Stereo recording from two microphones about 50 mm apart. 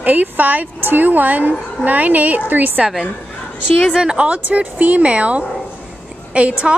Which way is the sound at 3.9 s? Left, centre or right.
Centre.